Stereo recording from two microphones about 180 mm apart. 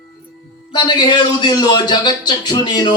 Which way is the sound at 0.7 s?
25° left (ahead or behind).